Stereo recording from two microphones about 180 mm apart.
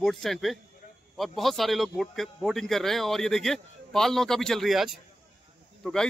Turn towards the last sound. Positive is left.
turn(degrees=5)  # may be behind; listen again after turning